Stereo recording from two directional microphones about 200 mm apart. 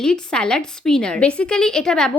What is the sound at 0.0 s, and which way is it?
A woman's voice, 5° left (ahead or behind).